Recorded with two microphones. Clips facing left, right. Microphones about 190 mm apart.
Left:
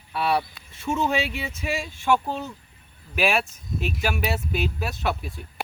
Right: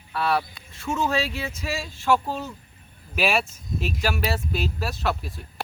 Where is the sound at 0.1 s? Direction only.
20° left (ahead or behind).